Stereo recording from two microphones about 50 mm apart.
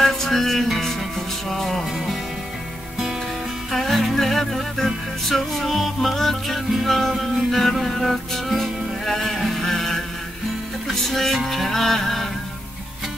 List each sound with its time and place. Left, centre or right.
0.0 s music: centre
3.7 s music: centre
11.1 s music: centre